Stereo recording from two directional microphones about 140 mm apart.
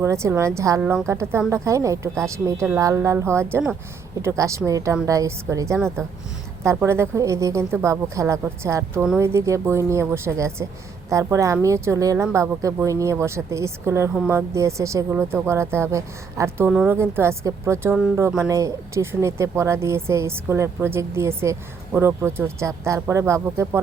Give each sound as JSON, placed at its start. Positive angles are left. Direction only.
{"t": 0.0, "sound": "speech", "side_deg": -20}